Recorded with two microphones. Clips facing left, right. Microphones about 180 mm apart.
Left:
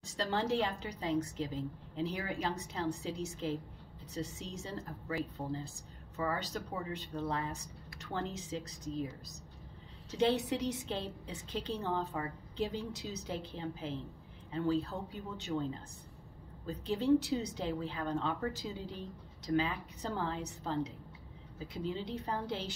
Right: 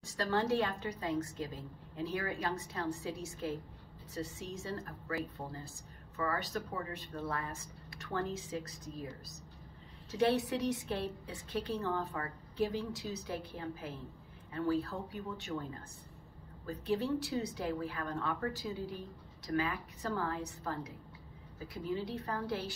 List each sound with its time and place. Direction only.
0.0 s a woman's voice: 20° left (ahead or behind)
10.1 s a woman's voice: 20° left (ahead or behind)
21.9 s a woman's voice: 20° left (ahead or behind)